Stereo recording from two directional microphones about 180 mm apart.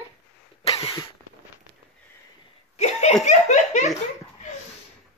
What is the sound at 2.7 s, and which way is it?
Laughter, 40° left (ahead or behind).